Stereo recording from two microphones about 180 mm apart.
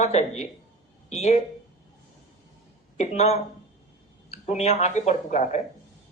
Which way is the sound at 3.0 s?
35° left (ahead or behind).